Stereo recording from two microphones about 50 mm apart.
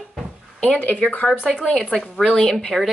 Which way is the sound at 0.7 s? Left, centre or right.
Left.